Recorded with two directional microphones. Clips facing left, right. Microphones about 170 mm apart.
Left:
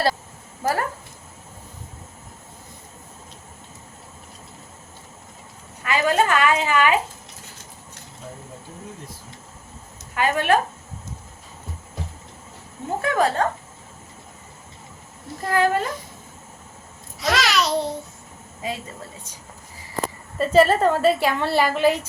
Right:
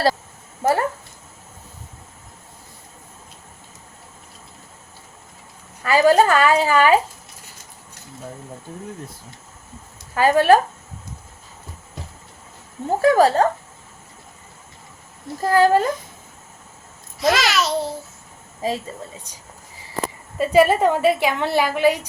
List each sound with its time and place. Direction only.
0.6 s speech: 25° right (ahead or behind)
5.8 s a woman's voice: 35° right (ahead or behind)
10.2 s a woman's voice: 35° right (ahead or behind)
13.0 s a woman's voice: 35° right (ahead or behind)
15.4 s a woman's voice: 35° right (ahead or behind)
17.2 s babbling: centre (ahead or behind)
18.6 s a woman's voice: 35° right (ahead or behind)
20.4 s a woman's voice: 10° right (ahead or behind)